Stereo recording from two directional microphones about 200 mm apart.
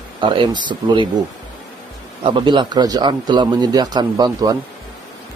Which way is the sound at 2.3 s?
25° right (ahead or behind).